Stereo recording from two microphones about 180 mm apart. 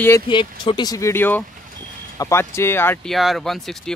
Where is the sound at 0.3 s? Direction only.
25° left (ahead or behind).